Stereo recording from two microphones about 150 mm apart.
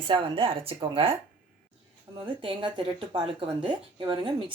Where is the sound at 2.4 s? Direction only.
35° right (ahead or behind).